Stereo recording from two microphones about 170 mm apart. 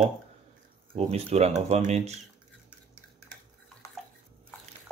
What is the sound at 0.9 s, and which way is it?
Speech, 35° right (ahead or behind).